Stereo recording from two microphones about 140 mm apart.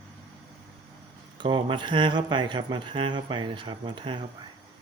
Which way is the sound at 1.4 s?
35° right (ahead or behind).